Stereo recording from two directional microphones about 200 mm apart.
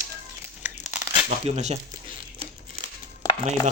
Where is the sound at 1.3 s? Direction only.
35° right (ahead or behind).